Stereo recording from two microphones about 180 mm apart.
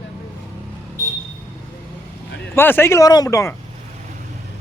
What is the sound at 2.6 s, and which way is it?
Speech, 10° left (ahead or behind).